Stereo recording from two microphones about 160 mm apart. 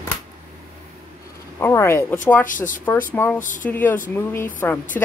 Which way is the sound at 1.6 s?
15° left (ahead or behind).